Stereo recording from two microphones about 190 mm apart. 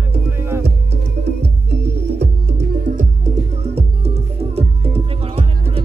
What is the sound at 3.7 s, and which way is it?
Music, 30° right (ahead or behind).